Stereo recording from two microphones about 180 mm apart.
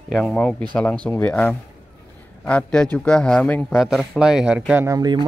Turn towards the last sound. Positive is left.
turn(degrees=-20)  # may be behind; listen again after turning